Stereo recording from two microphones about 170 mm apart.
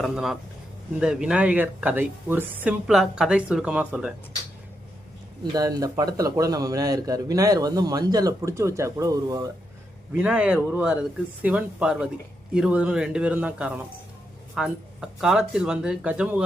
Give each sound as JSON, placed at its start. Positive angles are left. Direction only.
{"t": 0.0, "sound": "speech", "side_deg": 0}
{"t": 5.4, "sound": "speech", "side_deg": -20}
{"t": 10.1, "sound": "speech", "side_deg": -10}